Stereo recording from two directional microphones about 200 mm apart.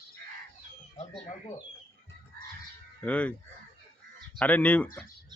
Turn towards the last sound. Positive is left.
turn(degrees=5)  # may be behind; listen again after turning